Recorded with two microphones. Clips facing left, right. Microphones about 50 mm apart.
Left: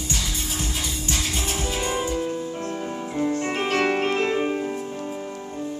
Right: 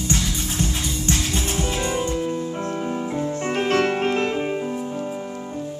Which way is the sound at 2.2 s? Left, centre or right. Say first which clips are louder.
Right 2 dB; centre.